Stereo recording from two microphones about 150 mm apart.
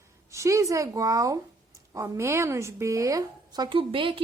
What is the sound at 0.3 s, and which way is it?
A woman's voice, 20° right (ahead or behind).